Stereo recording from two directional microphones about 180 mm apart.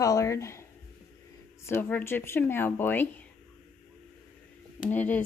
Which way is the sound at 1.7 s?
10° left (ahead or behind).